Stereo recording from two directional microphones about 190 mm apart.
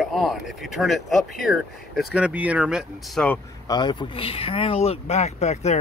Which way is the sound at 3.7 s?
25° left (ahead or behind).